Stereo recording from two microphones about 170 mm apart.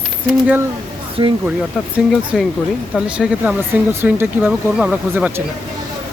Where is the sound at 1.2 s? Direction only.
30° right (ahead or behind).